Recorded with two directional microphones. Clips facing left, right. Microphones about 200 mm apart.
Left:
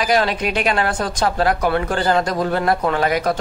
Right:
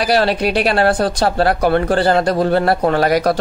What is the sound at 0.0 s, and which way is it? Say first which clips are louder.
Speech: right 3 dB; 35° right (ahead or behind).